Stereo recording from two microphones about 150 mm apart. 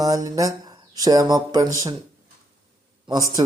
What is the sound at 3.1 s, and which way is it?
Speech, 25° right (ahead or behind).